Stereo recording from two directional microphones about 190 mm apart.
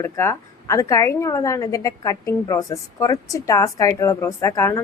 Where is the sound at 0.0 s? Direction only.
15° left (ahead or behind).